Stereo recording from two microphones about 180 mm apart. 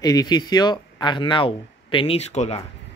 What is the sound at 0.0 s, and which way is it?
Speech, 20° left (ahead or behind).